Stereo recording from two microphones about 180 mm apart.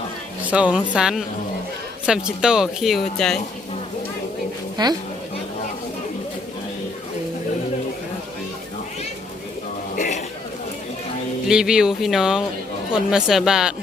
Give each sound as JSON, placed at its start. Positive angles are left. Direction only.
{"t": 0.4, "sound": "speech", "side_deg": -5}
{"t": 4.8, "sound": "speech", "side_deg": -25}
{"t": 9.9, "sound": "a sound", "side_deg": 45}
{"t": 11.4, "sound": "speech", "side_deg": -5}